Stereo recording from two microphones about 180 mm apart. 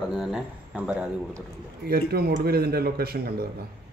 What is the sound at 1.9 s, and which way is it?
Speech, 60° right (ahead or behind).